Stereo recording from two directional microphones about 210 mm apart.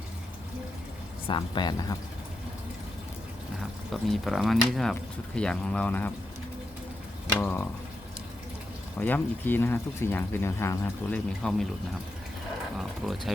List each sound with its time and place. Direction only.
1.3 s speech: 20° left (ahead or behind)
4.1 s speech: centre (ahead or behind)
7.3 s speech: 10° left (ahead or behind)
9.0 s speech: 10° left (ahead or behind)
13.0 s speech: centre (ahead or behind)